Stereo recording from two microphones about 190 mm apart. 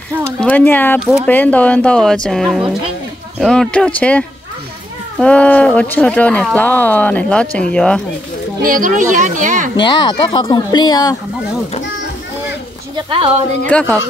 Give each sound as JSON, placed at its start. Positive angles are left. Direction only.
{"t": 0.4, "sound": "speech", "side_deg": 10}
{"t": 0.9, "sound": "speech", "side_deg": 0}
{"t": 5.2, "sound": "speech", "side_deg": 5}
{"t": 8.6, "sound": "speech", "side_deg": -45}
{"t": 9.8, "sound": "speech", "side_deg": 25}
{"t": 12.9, "sound": "speech", "side_deg": -25}
{"t": 13.7, "sound": "speech", "side_deg": 5}